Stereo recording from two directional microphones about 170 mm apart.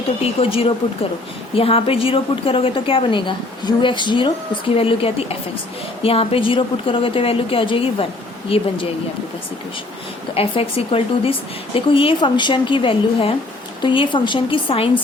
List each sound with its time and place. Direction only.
0.2 s speech: 35° left (ahead or behind)
10.3 s speech: 35° left (ahead or behind)